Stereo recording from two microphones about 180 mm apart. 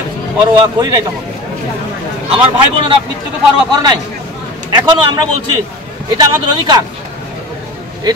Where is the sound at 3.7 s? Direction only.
25° right (ahead or behind).